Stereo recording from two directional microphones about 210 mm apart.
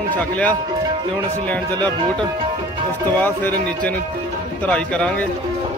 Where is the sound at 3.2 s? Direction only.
10° left (ahead or behind).